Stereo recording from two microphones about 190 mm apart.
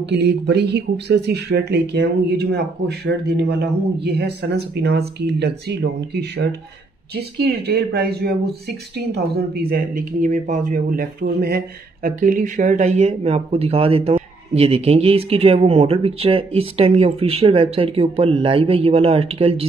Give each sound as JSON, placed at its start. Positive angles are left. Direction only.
{"t": 0.0, "sound": "speech", "side_deg": -60}